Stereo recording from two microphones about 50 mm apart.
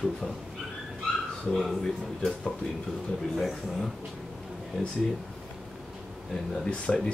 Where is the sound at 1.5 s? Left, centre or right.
Centre.